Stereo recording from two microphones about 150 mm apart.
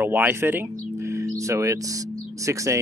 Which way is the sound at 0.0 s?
10° right (ahead or behind).